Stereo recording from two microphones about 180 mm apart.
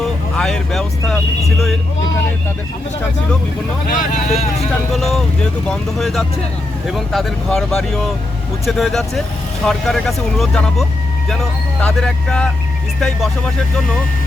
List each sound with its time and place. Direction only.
0.0 s speech: 5° left (ahead or behind)
3.8 s speech: 45° left (ahead or behind)
4.9 s speech: centre (ahead or behind)